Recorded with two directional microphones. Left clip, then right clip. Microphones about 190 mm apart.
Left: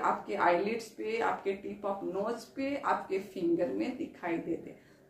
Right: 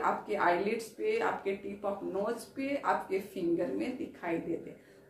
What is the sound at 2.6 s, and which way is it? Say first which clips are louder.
Speech: even; 15° left (ahead or behind).